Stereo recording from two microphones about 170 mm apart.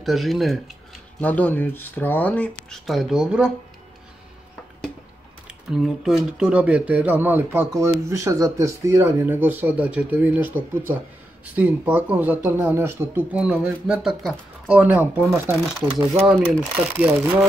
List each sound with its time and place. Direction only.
0.0 s speech: centre (ahead or behind)
5.5 s speech: centre (ahead or behind)
16.7 s speech: 10° right (ahead or behind)